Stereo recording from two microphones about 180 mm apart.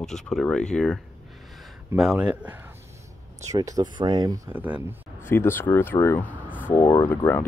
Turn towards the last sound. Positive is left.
turn(degrees=10)  # may be behind; listen again after turning